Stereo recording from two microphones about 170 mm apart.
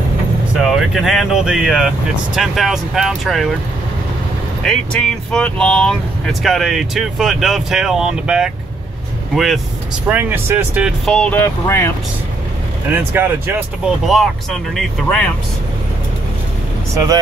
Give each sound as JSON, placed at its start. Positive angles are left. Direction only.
{"t": 0.6, "sound": "speech", "side_deg": 0}
{"t": 5.3, "sound": "speech", "side_deg": 5}
{"t": 10.0, "sound": "speech", "side_deg": -10}
{"t": 11.1, "sound": "speech", "side_deg": 5}
{"t": 12.9, "sound": "speech", "side_deg": -10}
{"t": 14.0, "sound": "speech", "side_deg": 0}
{"t": 16.9, "sound": "speech", "side_deg": -20}